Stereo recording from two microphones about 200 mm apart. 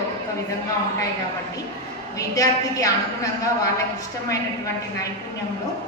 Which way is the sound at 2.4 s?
15° left (ahead or behind).